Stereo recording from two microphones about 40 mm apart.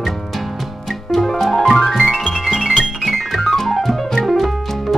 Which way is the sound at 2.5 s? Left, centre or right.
Centre.